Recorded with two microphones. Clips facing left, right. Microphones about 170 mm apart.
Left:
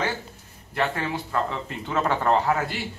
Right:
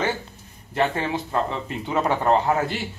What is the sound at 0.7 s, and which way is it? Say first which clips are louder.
Speech: right 3 dB; 20° right (ahead or behind).